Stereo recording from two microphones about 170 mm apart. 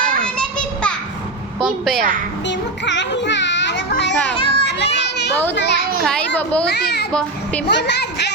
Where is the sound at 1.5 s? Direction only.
Centre (ahead or behind).